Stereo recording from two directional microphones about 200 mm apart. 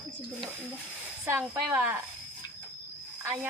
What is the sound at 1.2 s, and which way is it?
Speech, 10° right (ahead or behind).